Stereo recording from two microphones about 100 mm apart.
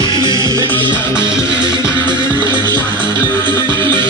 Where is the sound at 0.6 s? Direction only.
50° right (ahead or behind).